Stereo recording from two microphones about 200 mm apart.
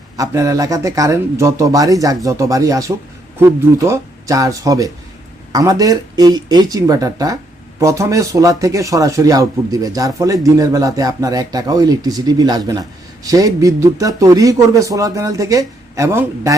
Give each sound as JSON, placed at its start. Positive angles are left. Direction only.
{"t": 0.2, "sound": "speech", "side_deg": -15}